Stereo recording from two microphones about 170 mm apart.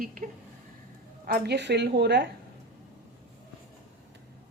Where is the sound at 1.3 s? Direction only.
85° right.